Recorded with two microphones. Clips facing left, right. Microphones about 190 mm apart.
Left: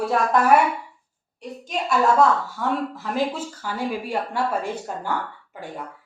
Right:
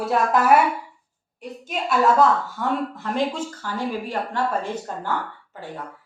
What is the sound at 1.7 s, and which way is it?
A woman's voice, centre (ahead or behind).